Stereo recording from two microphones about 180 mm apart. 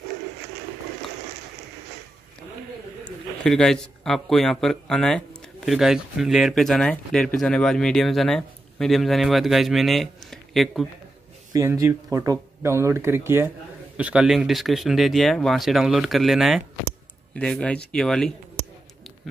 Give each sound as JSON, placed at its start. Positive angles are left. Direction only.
{"t": 3.4, "sound": "speech", "side_deg": 5}
{"t": 11.5, "sound": "speech", "side_deg": -15}